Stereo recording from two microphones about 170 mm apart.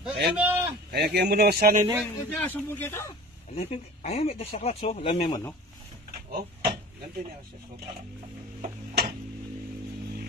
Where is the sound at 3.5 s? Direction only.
40° left (ahead or behind).